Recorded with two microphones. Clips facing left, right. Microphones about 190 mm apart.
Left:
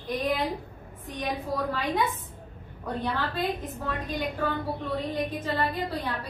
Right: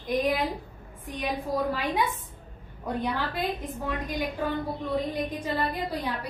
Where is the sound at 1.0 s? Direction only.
10° right (ahead or behind).